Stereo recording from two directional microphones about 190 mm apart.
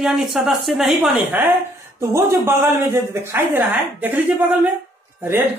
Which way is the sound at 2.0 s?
15° right (ahead or behind).